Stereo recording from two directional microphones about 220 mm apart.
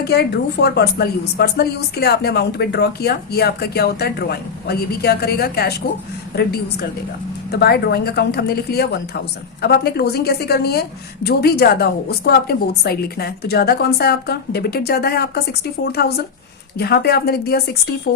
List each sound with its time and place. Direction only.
0.0 s a woman's voice: 50° left (ahead or behind)
7.5 s a woman's voice: 45° left (ahead or behind)